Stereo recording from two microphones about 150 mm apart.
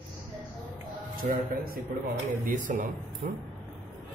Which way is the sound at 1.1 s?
75° right (ahead or behind).